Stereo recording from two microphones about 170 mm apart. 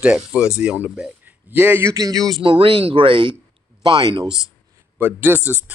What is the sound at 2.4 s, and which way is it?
Speech, 30° right (ahead or behind).